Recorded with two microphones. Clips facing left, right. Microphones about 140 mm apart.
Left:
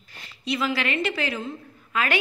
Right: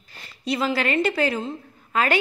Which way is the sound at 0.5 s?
35° right (ahead or behind).